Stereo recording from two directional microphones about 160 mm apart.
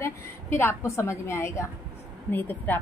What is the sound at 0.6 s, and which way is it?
A woman's voice, 15° left (ahead or behind).